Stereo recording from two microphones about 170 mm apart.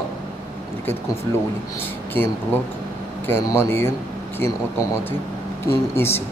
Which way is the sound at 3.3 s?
15° left (ahead or behind).